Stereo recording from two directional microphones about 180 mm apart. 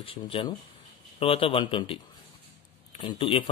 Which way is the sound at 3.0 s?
30° left (ahead or behind).